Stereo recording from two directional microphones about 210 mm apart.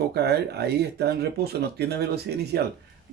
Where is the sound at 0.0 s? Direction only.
50° right (ahead or behind).